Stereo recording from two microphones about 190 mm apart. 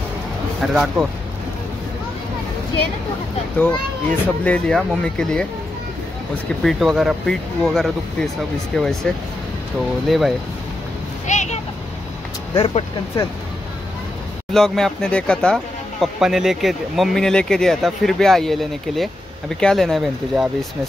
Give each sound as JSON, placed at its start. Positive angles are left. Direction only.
{"t": 0.6, "sound": "speech", "side_deg": -5}
{"t": 3.5, "sound": "speech", "side_deg": 10}
{"t": 6.6, "sound": "speech", "side_deg": 0}
{"t": 11.2, "sound": "a sound", "side_deg": 40}
{"t": 12.5, "sound": "speech", "side_deg": 25}
{"t": 14.5, "sound": "speech", "side_deg": 0}